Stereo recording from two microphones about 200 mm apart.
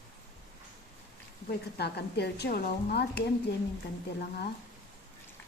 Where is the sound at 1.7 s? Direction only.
55° left (ahead or behind).